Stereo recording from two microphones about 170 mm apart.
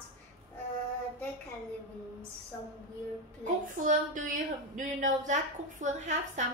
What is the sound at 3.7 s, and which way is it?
A woman's voice, 50° right (ahead or behind).